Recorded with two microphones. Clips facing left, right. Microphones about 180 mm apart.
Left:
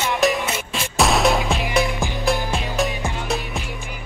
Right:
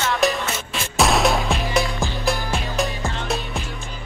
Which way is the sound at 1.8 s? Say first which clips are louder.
Left 2 dB; 15° left (ahead or behind).